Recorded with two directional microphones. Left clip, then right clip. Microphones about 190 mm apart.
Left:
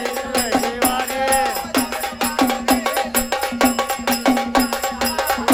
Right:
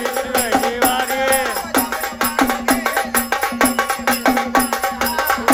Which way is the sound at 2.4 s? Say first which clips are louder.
Right 1 dB; 25° right (ahead or behind).